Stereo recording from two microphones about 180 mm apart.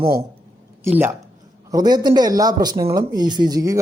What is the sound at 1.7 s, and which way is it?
Speech, 20° right (ahead or behind).